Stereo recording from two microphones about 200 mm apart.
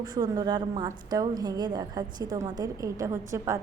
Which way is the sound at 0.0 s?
20° right (ahead or behind).